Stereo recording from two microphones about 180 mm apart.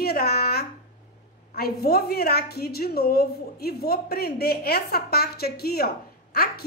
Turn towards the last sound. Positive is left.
turn(degrees=55)  # may be behind; listen again after turning